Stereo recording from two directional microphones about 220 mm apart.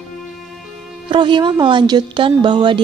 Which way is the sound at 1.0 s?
20° right (ahead or behind).